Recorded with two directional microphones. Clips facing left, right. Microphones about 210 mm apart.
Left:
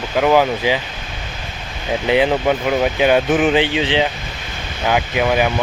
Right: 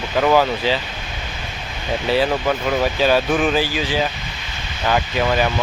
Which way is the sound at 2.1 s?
20° left (ahead or behind).